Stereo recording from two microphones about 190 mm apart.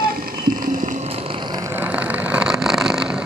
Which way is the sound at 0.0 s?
50° right (ahead or behind).